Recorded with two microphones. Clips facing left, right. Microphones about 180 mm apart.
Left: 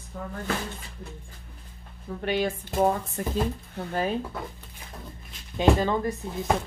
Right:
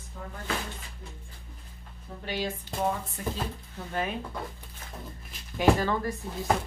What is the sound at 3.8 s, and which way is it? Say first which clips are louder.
Speech: left 4 dB; 65° left (ahead or behind).